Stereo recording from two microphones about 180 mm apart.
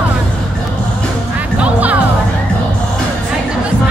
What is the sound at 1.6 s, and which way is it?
Music, 10° right (ahead or behind).